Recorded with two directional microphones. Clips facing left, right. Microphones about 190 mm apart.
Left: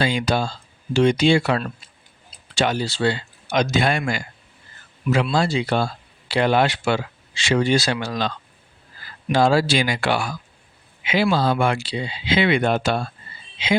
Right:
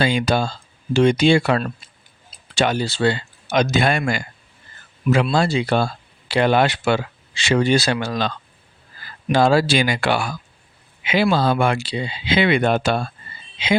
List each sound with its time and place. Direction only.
0.0 s speech: 60° right (ahead or behind)
5.3 s speech: 55° right (ahead or behind)
9.3 s speech: 60° right (ahead or behind)